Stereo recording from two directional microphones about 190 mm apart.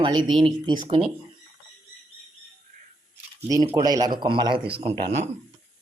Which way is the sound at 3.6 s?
25° right (ahead or behind).